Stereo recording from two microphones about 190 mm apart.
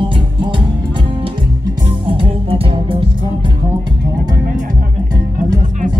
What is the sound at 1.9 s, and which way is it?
Music, 30° right (ahead or behind).